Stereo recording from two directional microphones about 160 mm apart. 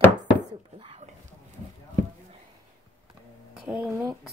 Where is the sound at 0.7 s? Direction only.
40° right (ahead or behind).